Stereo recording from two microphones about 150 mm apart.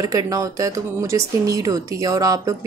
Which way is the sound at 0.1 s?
20° right (ahead or behind).